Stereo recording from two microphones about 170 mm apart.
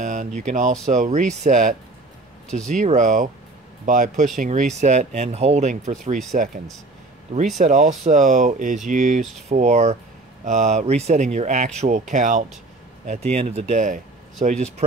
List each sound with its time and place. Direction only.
0.0 s speech: 45° right (ahead or behind)
2.8 s speech: 50° right (ahead or behind)
7.5 s speech: 45° right (ahead or behind)